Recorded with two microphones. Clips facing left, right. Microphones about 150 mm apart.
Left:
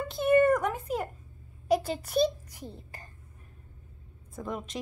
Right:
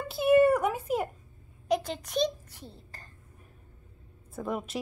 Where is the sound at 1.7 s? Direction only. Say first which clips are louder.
Left 2 dB; 5° left (ahead or behind).